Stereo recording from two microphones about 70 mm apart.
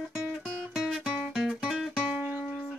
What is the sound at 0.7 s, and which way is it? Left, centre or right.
Music, centre.